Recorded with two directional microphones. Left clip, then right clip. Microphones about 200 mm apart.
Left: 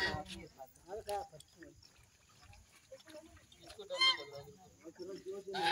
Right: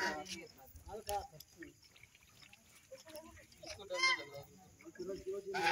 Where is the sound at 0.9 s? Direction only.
25° left (ahead or behind).